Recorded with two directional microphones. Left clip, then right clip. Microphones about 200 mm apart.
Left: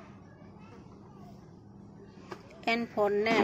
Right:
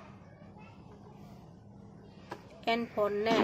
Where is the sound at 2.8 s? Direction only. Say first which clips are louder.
Left 3 dB; 5° left (ahead or behind).